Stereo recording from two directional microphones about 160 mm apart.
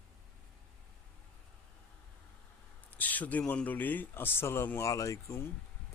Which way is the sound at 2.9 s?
10° left (ahead or behind).